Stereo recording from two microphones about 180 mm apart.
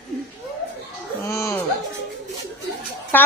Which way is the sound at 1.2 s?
15° left (ahead or behind).